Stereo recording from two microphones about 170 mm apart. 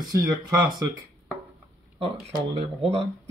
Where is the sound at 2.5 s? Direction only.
35° right (ahead or behind).